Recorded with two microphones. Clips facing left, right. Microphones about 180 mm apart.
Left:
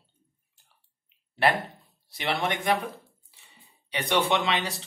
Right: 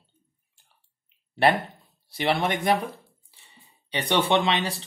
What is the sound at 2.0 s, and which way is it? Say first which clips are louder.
Speech: right 4 dB; 30° right (ahead or behind).